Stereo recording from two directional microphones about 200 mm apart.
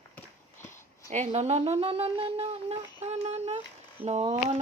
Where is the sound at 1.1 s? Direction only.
35° right (ahead or behind).